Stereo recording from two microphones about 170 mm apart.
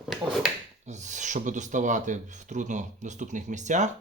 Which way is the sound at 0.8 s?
45° right (ahead or behind).